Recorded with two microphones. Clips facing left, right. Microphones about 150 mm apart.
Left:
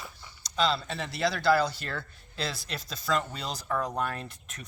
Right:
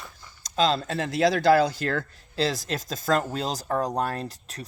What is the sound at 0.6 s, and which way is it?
Speech, 45° right (ahead or behind).